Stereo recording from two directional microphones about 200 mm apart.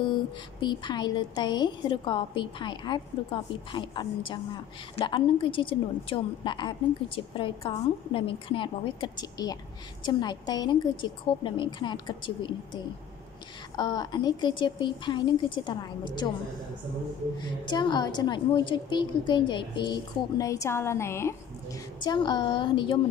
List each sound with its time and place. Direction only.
0.6 s a woman's voice: 25° left (ahead or behind)
17.4 s a woman's voice: 20° left (ahead or behind)